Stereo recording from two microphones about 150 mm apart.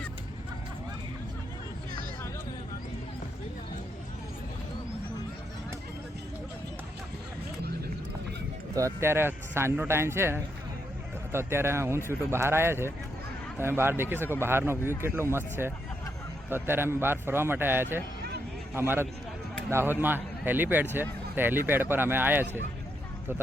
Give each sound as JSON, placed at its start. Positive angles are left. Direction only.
{"t": 8.7, "sound": "speech", "side_deg": -20}